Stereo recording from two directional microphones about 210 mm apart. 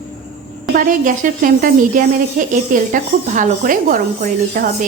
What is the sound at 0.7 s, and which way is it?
A woman's voice, 40° right (ahead or behind).